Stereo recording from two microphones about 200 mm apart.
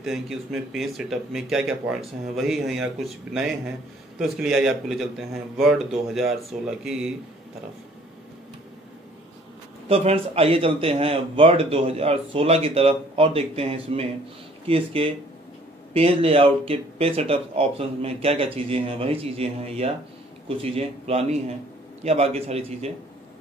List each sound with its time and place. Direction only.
0.0 s speech: centre (ahead or behind)
9.8 s a man's voice: 30° right (ahead or behind)